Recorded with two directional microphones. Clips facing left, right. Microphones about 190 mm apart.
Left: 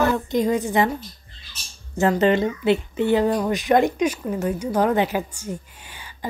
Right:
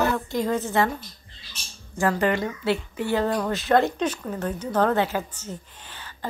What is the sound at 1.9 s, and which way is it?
A woman's voice, 25° left (ahead or behind).